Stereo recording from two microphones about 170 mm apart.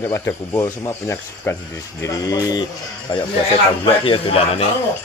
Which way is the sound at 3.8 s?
30° left (ahead or behind).